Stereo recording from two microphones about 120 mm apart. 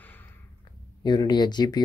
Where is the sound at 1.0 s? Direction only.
35° left (ahead or behind).